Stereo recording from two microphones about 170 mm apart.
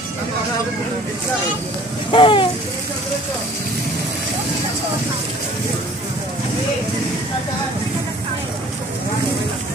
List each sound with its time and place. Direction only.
2.1 s speech: 30° left (ahead or behind)